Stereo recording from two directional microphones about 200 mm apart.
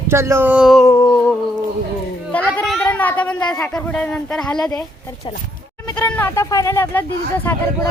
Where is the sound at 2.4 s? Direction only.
5° left (ahead or behind).